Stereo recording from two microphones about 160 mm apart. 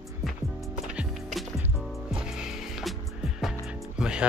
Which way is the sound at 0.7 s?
5° right (ahead or behind).